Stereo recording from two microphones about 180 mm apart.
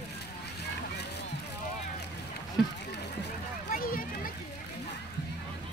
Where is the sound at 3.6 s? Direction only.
55° left (ahead or behind).